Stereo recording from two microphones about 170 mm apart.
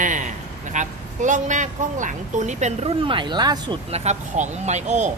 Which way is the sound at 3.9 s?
40° right (ahead or behind).